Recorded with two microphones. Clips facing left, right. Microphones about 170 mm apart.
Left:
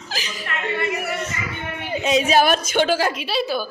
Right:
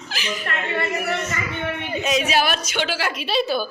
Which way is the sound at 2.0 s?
30° left (ahead or behind).